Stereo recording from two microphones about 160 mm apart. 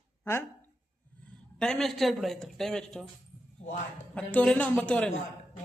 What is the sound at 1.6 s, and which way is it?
Speech, 5° left (ahead or behind).